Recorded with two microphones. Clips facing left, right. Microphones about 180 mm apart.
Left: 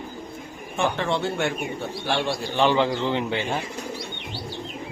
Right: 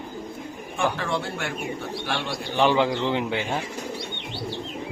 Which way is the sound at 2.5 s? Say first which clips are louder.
Right 1 dB; 10° right (ahead or behind).